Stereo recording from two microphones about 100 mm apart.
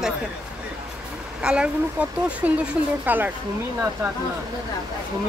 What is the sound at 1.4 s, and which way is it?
Speech, 10° right (ahead or behind).